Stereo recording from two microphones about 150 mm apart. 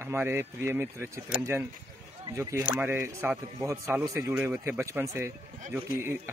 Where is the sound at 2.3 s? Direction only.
15° right (ahead or behind).